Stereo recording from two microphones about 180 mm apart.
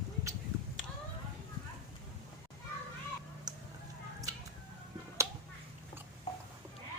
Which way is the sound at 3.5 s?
20° right (ahead or behind).